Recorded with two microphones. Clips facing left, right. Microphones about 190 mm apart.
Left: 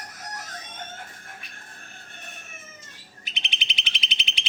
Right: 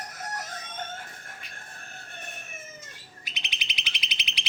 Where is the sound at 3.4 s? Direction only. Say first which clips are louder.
Left 3 dB; 25° left (ahead or behind).